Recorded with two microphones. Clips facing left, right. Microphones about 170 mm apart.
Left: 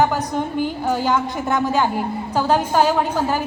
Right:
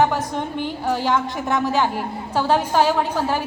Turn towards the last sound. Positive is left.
turn(degrees=0)  # may be behind; listen again after turning